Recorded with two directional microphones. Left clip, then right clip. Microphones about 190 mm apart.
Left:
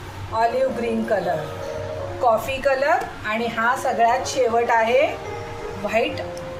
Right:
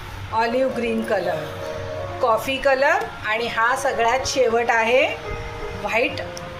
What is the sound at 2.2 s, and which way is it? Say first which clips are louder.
A woman's voice: even; 30° right (ahead or behind).